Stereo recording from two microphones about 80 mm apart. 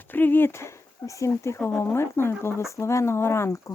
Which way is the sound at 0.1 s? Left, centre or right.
Left.